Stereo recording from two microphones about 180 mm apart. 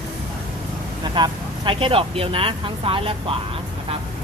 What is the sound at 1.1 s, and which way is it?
Speech, 25° right (ahead or behind).